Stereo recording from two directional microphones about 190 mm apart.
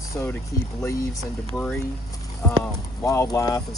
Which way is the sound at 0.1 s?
15° left (ahead or behind).